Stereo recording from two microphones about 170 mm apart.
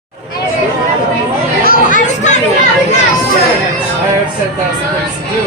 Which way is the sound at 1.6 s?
55° left (ahead or behind).